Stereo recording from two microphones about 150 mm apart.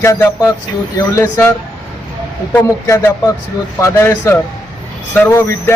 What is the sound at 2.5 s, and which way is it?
A man's voice, 20° left (ahead or behind).